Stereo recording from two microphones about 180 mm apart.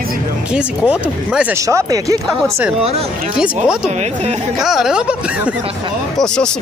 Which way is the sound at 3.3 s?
5° right (ahead or behind).